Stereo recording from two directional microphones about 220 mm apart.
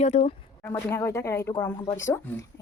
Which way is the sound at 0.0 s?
30° left (ahead or behind).